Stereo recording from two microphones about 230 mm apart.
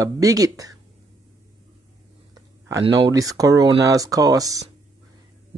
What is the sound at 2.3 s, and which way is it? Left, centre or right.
Speech, centre.